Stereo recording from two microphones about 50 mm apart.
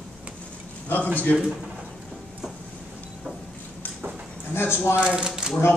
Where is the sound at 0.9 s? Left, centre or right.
Left.